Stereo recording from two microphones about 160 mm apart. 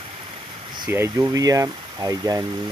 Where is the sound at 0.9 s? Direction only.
15° right (ahead or behind).